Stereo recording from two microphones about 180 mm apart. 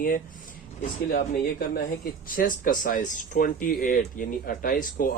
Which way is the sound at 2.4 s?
50° left (ahead or behind).